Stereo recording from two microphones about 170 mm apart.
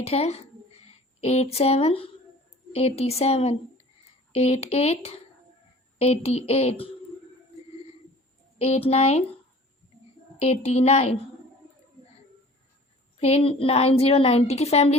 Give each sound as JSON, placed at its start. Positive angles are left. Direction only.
{"t": 0.0, "sound": "a woman's voice", "side_deg": 40}
{"t": 8.5, "sound": "a woman's voice", "side_deg": 40}
{"t": 10.3, "sound": "a woman's voice", "side_deg": 40}
{"t": 13.1, "sound": "a woman's voice", "side_deg": 35}